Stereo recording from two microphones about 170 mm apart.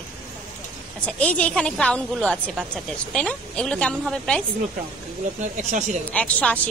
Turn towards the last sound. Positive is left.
turn(degrees=10)  # may be behind; listen again after turning